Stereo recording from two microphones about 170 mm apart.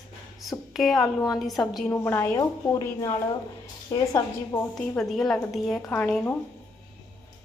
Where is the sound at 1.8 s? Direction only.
10° left (ahead or behind).